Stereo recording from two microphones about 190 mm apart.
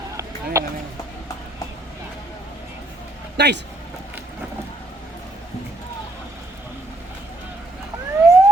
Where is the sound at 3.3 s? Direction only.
60° right (ahead or behind).